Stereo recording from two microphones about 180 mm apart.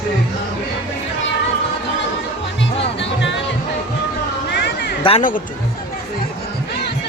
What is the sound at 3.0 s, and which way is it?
Music, 90° left.